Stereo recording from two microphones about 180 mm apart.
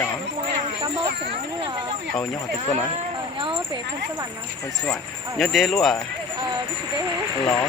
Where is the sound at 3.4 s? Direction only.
30° right (ahead or behind).